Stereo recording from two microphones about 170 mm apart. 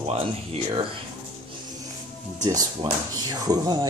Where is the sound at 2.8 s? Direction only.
30° right (ahead or behind).